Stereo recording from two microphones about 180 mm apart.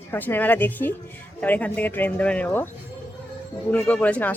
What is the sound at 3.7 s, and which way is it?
Speech, 10° left (ahead or behind).